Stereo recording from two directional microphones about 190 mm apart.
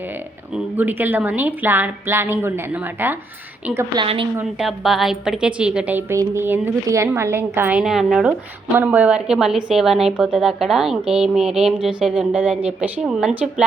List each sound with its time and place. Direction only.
0.5 s a woman's voice: 10° right (ahead or behind)
3.8 s a woman's voice: 25° right (ahead or behind)
4.4 s a woman's voice: centre (ahead or behind)